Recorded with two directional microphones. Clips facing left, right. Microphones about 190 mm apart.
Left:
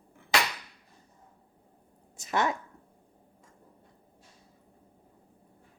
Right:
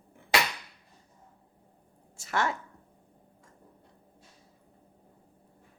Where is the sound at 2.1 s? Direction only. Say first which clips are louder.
Left 2 dB; 20° left (ahead or behind).